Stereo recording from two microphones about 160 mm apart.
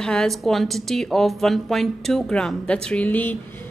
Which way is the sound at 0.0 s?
5° left (ahead or behind).